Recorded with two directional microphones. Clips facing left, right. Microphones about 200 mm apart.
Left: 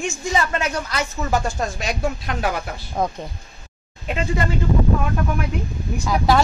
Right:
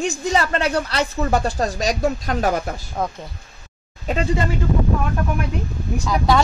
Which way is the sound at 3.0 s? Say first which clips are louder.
Left 2 dB; 15° left (ahead or behind).